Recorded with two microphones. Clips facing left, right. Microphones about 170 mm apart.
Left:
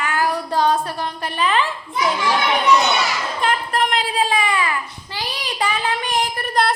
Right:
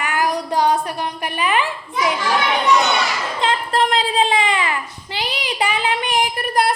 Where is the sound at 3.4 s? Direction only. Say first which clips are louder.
Right 2 dB; 25° right (ahead or behind).